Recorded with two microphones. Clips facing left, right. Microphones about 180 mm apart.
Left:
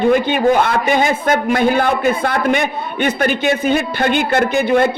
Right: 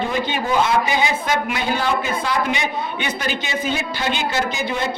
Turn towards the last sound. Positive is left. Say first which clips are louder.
# left 10 dB
turn(degrees=55)  # may be behind; listen again after turning